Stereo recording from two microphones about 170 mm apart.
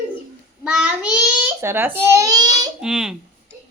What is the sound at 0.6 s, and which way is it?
A woman's voice, 5° right (ahead or behind).